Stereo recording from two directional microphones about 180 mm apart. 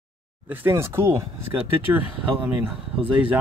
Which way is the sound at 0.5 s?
15° right (ahead or behind).